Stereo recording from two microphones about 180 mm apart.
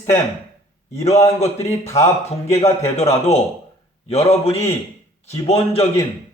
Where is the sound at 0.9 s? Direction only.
35° left (ahead or behind).